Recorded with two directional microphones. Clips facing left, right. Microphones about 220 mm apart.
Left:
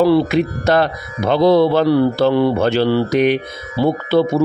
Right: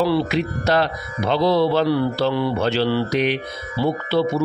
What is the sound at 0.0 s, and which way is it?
Speech, 50° left (ahead or behind).